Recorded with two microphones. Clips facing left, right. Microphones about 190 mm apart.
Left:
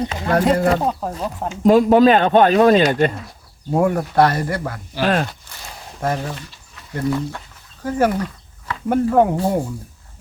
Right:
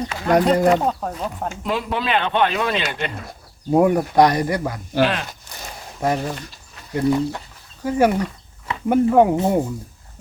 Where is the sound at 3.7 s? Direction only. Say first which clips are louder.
Right 2 dB; 15° right (ahead or behind).